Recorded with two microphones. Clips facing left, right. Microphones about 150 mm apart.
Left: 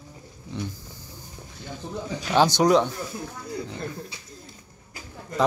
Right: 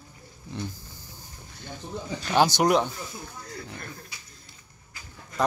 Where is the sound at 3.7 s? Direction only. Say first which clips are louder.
Left 7 dB; 25° left (ahead or behind).